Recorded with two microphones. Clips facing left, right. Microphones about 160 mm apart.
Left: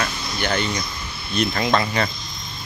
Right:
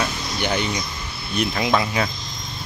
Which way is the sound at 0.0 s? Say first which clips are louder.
Right 1 dB; 10° right (ahead or behind).